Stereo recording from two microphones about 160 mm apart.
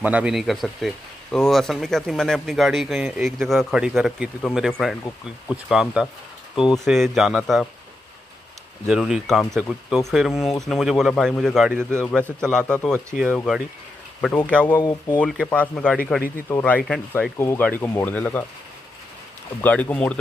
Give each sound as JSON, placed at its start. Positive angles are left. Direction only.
{"t": 0.0, "sound": "speech", "side_deg": -10}
{"t": 6.5, "sound": "speech", "side_deg": 30}
{"t": 6.8, "sound": "speech", "side_deg": 0}
{"t": 8.8, "sound": "speech", "side_deg": -5}
{"t": 14.7, "sound": "speech", "side_deg": 25}
{"t": 15.1, "sound": "speech", "side_deg": 5}
{"t": 19.6, "sound": "speech", "side_deg": 10}